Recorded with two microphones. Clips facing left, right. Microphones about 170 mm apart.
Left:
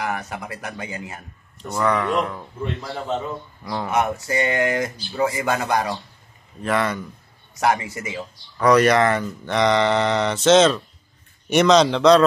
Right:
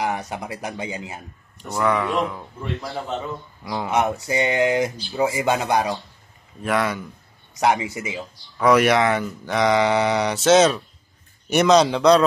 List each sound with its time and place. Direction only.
0.0 s speech: 20° right (ahead or behind)
1.6 s speech: centre (ahead or behind)
3.6 s speech: 15° right (ahead or behind)
6.6 s speech: centre (ahead or behind)
7.6 s speech: 15° right (ahead or behind)
8.6 s speech: 5° right (ahead or behind)